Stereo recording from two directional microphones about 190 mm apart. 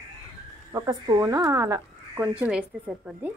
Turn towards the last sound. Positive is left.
turn(degrees=-5)  # may be behind; listen again after turning